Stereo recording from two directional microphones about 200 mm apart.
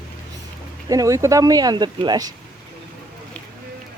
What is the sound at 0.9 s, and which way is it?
Speech, 15° right (ahead or behind).